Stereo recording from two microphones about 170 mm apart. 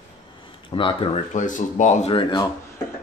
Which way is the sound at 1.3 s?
45° left (ahead or behind).